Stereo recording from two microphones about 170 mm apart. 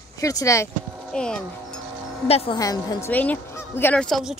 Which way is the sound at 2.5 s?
20° left (ahead or behind).